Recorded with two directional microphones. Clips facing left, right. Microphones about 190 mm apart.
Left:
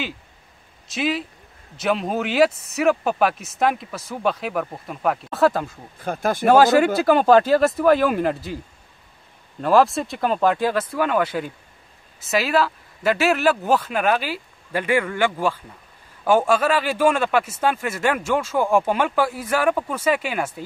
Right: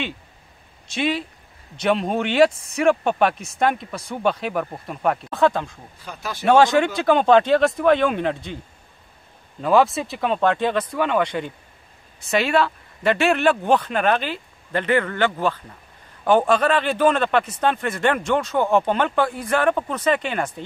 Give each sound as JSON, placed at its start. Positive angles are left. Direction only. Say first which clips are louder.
{"t": 0.8, "sound": "speech", "louder": "right 1 dB", "side_deg": 0}
{"t": 5.9, "sound": "speech", "louder": "left 10 dB", "side_deg": 50}
{"t": 6.4, "sound": "speech", "louder": "left 1 dB", "side_deg": 5}
{"t": 9.6, "sound": "speech", "louder": "left 1 dB", "side_deg": 0}